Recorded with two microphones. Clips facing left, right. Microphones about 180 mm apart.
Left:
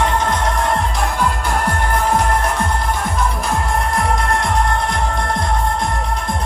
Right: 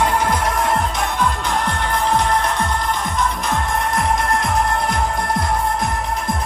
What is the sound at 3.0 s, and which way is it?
Music, centre (ahead or behind).